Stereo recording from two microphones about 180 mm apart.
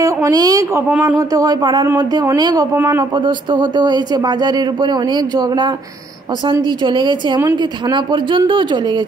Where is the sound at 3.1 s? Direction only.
25° right (ahead or behind).